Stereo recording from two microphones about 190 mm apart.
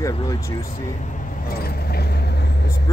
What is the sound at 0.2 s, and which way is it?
Speech, 20° left (ahead or behind).